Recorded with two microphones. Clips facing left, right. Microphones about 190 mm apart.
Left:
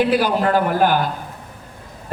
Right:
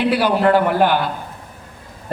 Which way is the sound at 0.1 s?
45° left (ahead or behind).